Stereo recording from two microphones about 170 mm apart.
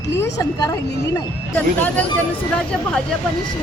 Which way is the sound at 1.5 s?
10° left (ahead or behind).